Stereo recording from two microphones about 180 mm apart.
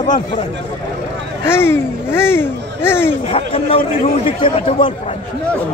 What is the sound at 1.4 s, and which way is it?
Speech, 15° left (ahead or behind).